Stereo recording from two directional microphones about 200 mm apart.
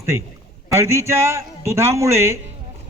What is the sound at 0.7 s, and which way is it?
Speech, 15° right (ahead or behind).